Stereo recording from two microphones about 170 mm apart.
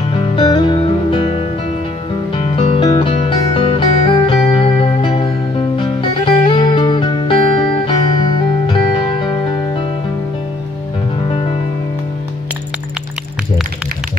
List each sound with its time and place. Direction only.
0.1 s music: 30° left (ahead or behind)